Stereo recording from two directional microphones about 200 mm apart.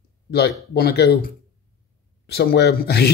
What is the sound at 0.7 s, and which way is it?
A man's voice, 55° left (ahead or behind).